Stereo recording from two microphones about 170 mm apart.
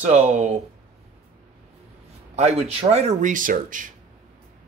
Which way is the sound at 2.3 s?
40° right (ahead or behind).